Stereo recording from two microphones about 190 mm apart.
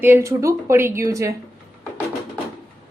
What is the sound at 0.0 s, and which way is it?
A woman's voice, 15° right (ahead or behind).